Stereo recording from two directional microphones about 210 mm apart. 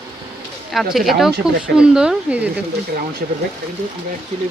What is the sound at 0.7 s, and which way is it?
Speech, centre (ahead or behind).